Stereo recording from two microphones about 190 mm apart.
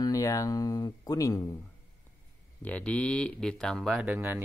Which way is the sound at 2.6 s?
5° left (ahead or behind).